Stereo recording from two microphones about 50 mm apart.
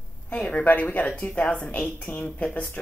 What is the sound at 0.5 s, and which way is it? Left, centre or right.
A woman's voice, left.